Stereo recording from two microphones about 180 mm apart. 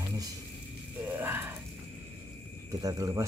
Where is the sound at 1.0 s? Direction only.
10° right (ahead or behind).